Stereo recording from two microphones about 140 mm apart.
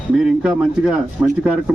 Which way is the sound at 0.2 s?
5° right (ahead or behind).